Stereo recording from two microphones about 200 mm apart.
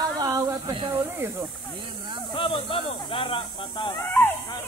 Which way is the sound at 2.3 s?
25° left (ahead or behind).